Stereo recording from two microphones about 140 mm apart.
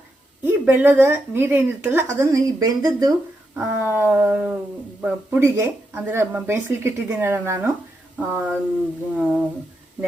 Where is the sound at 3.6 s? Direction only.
15° right (ahead or behind).